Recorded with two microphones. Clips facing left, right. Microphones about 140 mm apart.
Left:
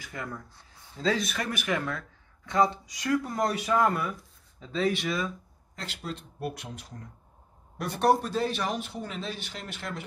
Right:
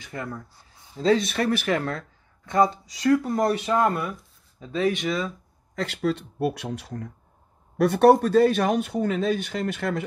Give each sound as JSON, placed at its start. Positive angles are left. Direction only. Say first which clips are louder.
{"t": 0.0, "sound": "speech", "louder": "right 4 dB", "side_deg": -30}
{"t": 5.8, "sound": "speech", "louder": "right 12 dB", "side_deg": -85}
{"t": 7.7, "sound": "speech", "louder": "right 8 dB", "side_deg": -60}